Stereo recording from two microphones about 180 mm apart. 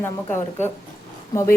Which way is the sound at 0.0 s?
10° left (ahead or behind).